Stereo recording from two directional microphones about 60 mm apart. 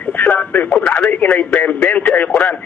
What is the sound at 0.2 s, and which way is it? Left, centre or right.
Radio, left.